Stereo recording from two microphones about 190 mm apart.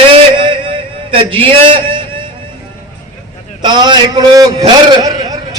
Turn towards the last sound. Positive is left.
turn(degrees=-20)  # may be behind; listen again after turning